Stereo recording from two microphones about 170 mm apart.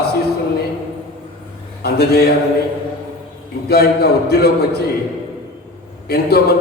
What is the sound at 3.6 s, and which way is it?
Speech, 65° left (ahead or behind).